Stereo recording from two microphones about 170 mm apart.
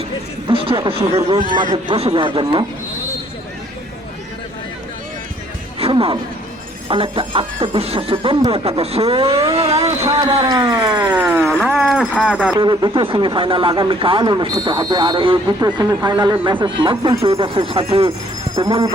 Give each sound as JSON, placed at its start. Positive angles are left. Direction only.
{"t": 0.4, "sound": "a sound", "side_deg": -30}
{"t": 0.9, "sound": "speech", "side_deg": -30}
{"t": 5.8, "sound": "speech", "side_deg": -30}
{"t": 10.1, "sound": "speech", "side_deg": -20}
{"t": 11.1, "sound": "a sound", "side_deg": -10}
{"t": 11.6, "sound": "speech", "side_deg": -5}
{"t": 12.5, "sound": "speech", "side_deg": -25}